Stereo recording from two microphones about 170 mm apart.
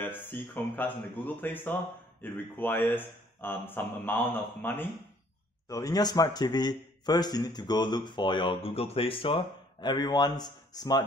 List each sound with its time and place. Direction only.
0.0 s speech: 10° left (ahead or behind)